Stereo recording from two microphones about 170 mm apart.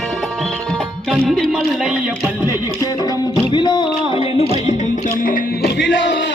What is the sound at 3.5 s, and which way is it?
Music, 25° left (ahead or behind).